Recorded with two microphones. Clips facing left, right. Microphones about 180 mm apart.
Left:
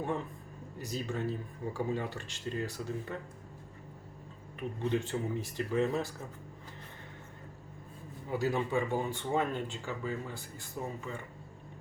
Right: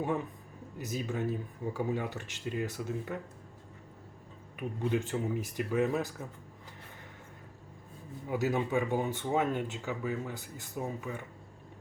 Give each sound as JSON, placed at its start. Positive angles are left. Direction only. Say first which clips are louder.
{"t": 0.8, "sound": "speech", "louder": "right 2 dB", "side_deg": -20}
{"t": 4.8, "sound": "speech", "louder": "right 1 dB", "side_deg": -15}
{"t": 8.3, "sound": "speech", "louder": "right 1 dB", "side_deg": -15}